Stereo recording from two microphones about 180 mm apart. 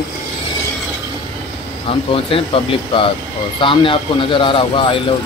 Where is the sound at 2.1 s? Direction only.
30° left (ahead or behind).